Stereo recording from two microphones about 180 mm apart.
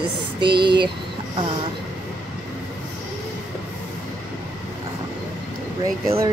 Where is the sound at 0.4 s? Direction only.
25° right (ahead or behind).